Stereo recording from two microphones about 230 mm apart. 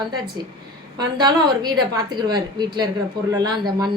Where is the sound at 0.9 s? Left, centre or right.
Centre.